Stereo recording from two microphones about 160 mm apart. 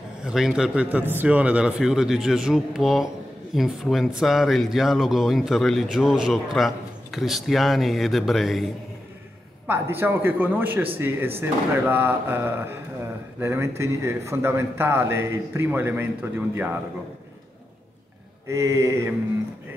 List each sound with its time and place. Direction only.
0.2 s a man's voice: 5° right (ahead or behind)
9.7 s a man's voice: 15° right (ahead or behind)
18.5 s mantra: 20° right (ahead or behind)